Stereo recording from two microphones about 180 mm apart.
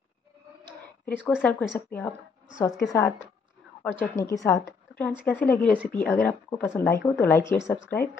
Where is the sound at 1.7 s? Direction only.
15° left (ahead or behind).